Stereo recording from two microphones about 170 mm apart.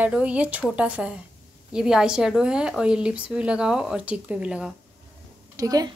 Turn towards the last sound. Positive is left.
turn(degrees=-20)  # may be behind; listen again after turning